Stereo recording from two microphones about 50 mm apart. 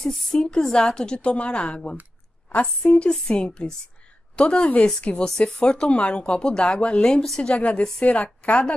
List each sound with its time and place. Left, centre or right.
0.0 s a woman's voice: centre